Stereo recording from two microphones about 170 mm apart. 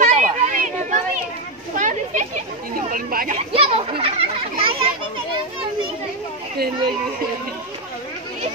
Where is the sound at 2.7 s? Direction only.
55° right (ahead or behind).